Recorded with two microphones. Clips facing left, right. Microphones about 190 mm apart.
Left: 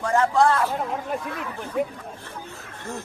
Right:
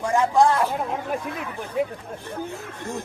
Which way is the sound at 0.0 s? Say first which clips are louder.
Right 1 dB; 15° right (ahead or behind).